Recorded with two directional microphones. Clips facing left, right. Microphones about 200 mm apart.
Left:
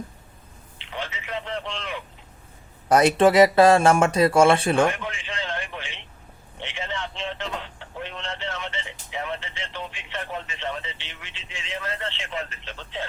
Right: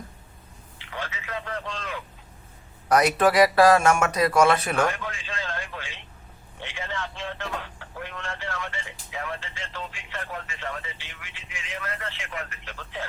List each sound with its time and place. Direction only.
0.8 s a man's voice: 20° left (ahead or behind)
4.9 s radio: 20° left (ahead or behind)
6.6 s speech: 20° left (ahead or behind)